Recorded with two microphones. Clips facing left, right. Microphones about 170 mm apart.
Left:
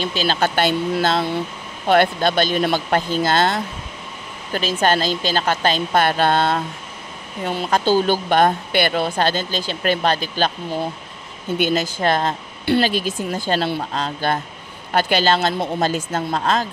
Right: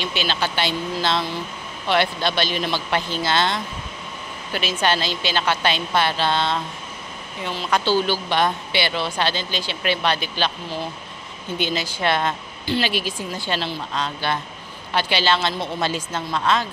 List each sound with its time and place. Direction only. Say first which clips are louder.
0.2 s speech: left 6 dB; 45° left (ahead or behind)
1.9 s speech: left 5 dB; 50° left (ahead or behind)